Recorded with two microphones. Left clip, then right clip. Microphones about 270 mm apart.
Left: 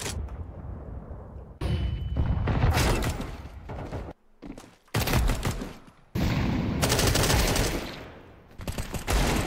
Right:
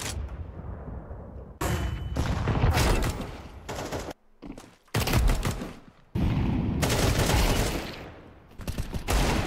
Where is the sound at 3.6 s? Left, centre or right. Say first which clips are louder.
Right 5 dB; right.